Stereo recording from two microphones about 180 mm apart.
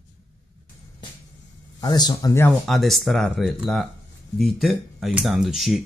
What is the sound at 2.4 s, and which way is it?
Speech, centre (ahead or behind).